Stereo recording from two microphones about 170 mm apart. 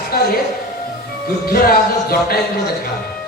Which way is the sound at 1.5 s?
55° left (ahead or behind).